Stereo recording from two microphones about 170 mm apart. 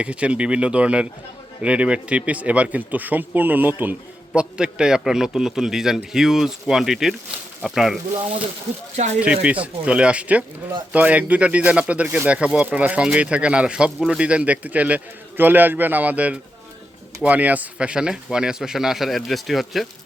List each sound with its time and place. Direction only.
0.0 s a man's voice: 5° right (ahead or behind)
9.2 s a man's voice: 5° right (ahead or behind)